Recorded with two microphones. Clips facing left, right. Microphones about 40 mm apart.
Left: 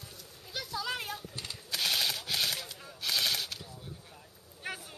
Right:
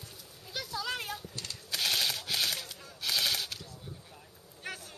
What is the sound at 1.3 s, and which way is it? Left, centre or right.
Gunshot, centre.